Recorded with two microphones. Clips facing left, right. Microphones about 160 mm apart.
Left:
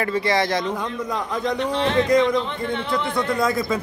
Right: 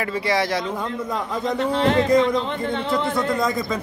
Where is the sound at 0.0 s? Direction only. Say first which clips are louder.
Left 1 dB; 5° right (ahead or behind).